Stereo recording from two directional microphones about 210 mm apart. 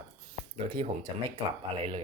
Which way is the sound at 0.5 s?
25° right (ahead or behind).